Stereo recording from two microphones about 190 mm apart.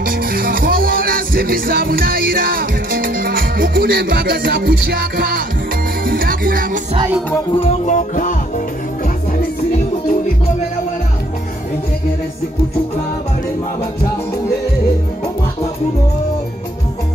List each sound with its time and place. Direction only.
0.0 s music: 50° right (ahead or behind)
7.5 s music: 30° left (ahead or behind)